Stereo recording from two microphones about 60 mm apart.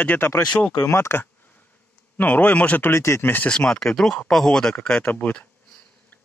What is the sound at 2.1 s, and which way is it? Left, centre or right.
Speech, left.